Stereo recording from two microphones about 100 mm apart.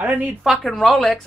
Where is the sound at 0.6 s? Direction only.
5° left (ahead or behind).